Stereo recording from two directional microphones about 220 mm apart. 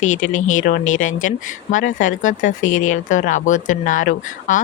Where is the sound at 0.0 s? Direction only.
35° left (ahead or behind).